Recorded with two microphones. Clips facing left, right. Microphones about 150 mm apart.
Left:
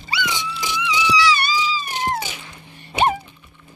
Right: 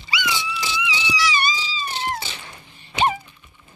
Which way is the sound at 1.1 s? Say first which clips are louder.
Left 4 dB; 65° left (ahead or behind).